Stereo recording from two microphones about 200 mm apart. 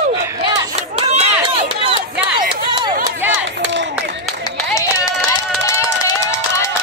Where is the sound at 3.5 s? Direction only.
60° right (ahead or behind).